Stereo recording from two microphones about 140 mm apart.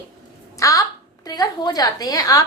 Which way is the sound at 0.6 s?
25° left (ahead or behind).